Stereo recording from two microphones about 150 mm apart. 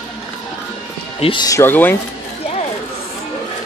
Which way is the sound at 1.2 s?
35° left (ahead or behind).